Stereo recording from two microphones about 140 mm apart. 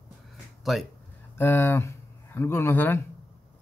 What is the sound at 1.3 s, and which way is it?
Speech, 15° left (ahead or behind).